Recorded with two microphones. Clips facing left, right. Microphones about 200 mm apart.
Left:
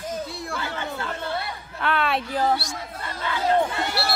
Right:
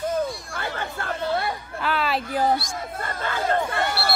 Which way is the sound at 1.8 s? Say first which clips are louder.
Left 1 dB; centre (ahead or behind).